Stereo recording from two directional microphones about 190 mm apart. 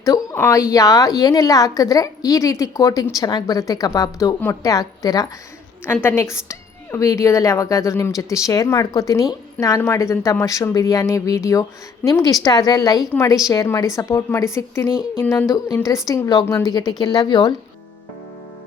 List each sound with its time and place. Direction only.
0.0 s a woman's voice: 20° left (ahead or behind)